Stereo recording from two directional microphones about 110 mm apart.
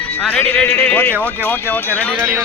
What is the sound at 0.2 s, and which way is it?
Speech, 10° left (ahead or behind).